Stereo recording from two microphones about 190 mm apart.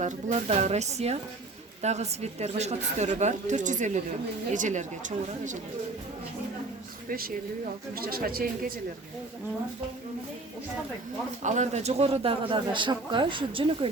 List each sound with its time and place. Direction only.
0.0 s a woman's voice: 40° right (ahead or behind)
7.1 s speech: 50° right (ahead or behind)
11.4 s speech: 40° right (ahead or behind)